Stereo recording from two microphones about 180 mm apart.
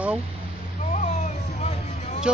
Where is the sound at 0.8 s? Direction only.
40° left (ahead or behind).